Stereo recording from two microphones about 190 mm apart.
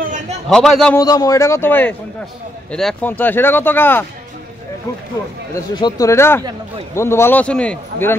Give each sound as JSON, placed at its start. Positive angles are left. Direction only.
{"t": 0.5, "sound": "a man's voice", "side_deg": 5}
{"t": 0.9, "sound": "speech", "side_deg": 20}
{"t": 5.5, "sound": "speech", "side_deg": 20}